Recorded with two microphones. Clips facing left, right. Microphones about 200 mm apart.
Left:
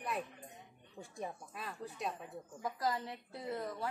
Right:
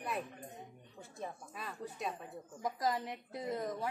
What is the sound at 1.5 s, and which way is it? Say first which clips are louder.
Speech: right 1 dB; centre (ahead or behind).